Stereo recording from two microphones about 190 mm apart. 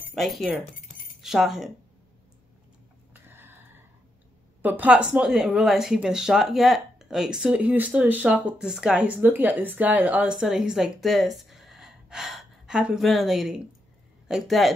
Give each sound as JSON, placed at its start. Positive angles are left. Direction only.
{"t": 0.1, "sound": "speech", "side_deg": 0}
{"t": 0.7, "sound": "keys jangling", "side_deg": 45}
{"t": 1.2, "sound": "speech", "side_deg": 0}
{"t": 3.1, "sound": "a sound", "side_deg": -10}
{"t": 4.6, "sound": "speech", "side_deg": -10}